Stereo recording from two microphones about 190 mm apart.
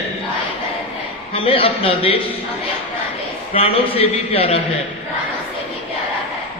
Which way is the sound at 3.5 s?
30° left (ahead or behind).